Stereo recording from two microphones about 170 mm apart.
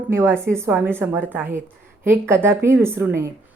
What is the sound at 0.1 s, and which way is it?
Speech, 15° right (ahead or behind).